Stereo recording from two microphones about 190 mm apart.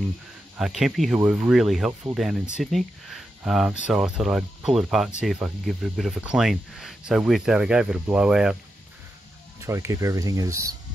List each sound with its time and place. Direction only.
0.6 s speech: centre (ahead or behind)
9.6 s speech: 15° right (ahead or behind)